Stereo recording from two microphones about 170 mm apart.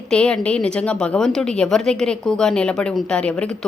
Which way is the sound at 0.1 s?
5° left (ahead or behind).